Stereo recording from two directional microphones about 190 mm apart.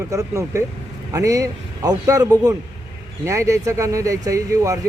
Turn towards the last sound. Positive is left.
turn(degrees=-15)  # may be behind; listen again after turning